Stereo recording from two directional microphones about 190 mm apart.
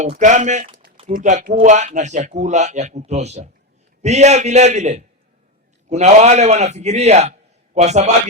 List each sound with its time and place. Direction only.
0.2 s a man's voice: 40° right (ahead or behind)